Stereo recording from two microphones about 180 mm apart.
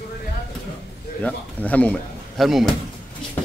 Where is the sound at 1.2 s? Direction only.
10° left (ahead or behind).